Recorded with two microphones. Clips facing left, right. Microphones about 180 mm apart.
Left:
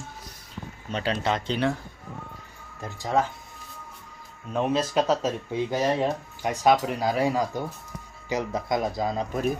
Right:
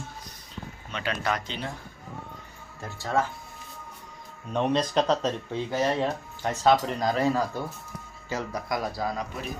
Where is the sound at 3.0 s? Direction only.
15° left (ahead or behind).